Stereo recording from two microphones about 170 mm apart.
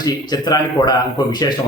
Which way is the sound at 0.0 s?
25° left (ahead or behind).